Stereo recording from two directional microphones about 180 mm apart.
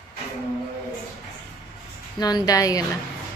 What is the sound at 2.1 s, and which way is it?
Speech, 20° left (ahead or behind).